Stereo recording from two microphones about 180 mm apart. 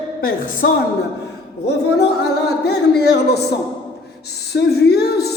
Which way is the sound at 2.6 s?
65° left (ahead or behind).